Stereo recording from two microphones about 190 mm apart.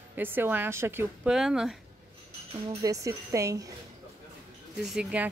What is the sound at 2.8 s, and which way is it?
Speech, 15° right (ahead or behind).